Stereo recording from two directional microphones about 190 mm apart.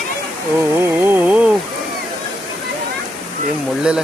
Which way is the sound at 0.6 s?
10° right (ahead or behind).